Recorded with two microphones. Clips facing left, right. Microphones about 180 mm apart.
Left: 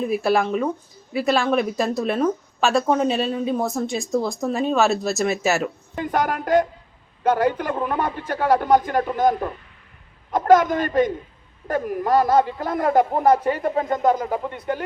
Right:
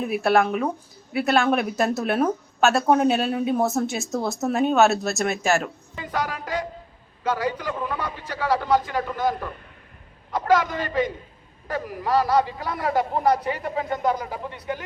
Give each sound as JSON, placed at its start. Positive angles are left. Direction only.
{"t": 0.0, "sound": "a woman's voice", "side_deg": 0}
{"t": 6.0, "sound": "speech", "side_deg": 50}